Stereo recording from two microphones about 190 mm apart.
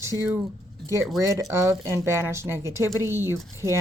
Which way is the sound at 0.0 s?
15° right (ahead or behind).